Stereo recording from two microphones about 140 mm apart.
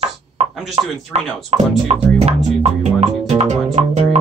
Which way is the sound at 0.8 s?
45° right (ahead or behind).